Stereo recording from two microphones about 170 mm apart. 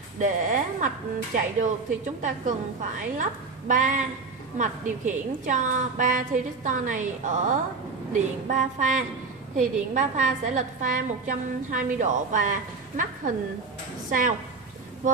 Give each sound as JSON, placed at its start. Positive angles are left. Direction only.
{"t": 0.2, "sound": "a woman's voice", "side_deg": -50}